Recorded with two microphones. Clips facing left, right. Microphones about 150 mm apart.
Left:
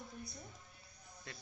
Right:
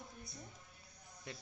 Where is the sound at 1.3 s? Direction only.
20° right (ahead or behind).